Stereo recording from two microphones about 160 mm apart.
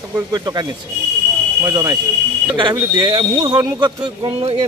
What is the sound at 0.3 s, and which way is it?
A man's voice, 25° right (ahead or behind).